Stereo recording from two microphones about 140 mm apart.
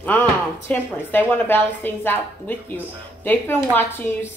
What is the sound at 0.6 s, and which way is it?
A woman's voice, 15° left (ahead or behind).